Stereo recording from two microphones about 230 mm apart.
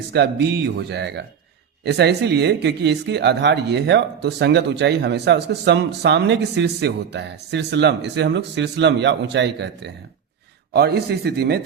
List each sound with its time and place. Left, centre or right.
0.1 s speech: right